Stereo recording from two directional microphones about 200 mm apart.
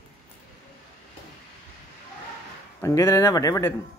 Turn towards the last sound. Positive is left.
turn(degrees=15)  # may be behind; listen again after turning